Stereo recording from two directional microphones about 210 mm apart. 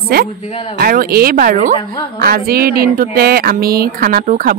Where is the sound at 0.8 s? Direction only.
45° right (ahead or behind).